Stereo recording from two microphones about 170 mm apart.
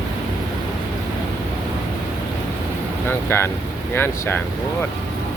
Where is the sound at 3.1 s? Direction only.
15° left (ahead or behind).